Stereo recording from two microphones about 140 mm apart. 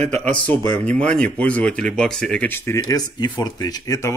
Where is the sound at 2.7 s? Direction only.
25° left (ahead or behind).